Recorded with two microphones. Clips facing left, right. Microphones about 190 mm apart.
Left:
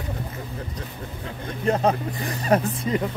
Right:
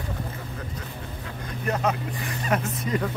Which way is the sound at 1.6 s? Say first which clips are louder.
Left 5 dB; 30° left (ahead or behind).